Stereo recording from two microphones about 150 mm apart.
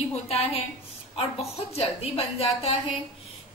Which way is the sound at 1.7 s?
40° left (ahead or behind).